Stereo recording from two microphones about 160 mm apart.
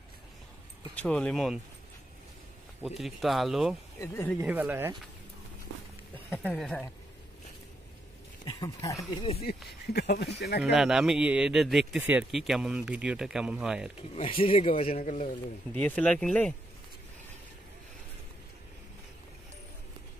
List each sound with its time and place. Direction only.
0.9 s speech: 10° left (ahead or behind)
2.8 s speech: centre (ahead or behind)
4.0 s speech: 15° left (ahead or behind)
4.4 s speech: 10° right (ahead or behind)
6.1 s speech: 10° left (ahead or behind)
8.5 s speech: 20° left (ahead or behind)
9.9 s speech: 90° left
10.6 s speech: 5° right (ahead or behind)
14.1 s speech: 35° left (ahead or behind)
15.8 s speech: 10° left (ahead or behind)